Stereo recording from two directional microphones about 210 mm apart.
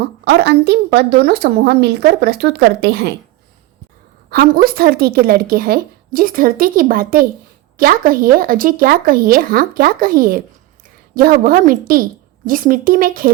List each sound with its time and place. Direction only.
0.0 s a woman's voice: 50° right (ahead or behind)
4.3 s a woman's voice: 45° right (ahead or behind)